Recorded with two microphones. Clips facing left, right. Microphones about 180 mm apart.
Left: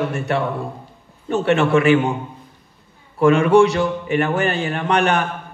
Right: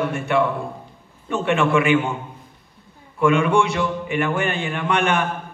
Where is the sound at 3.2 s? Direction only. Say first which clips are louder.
Left 5 dB; 40° left (ahead or behind).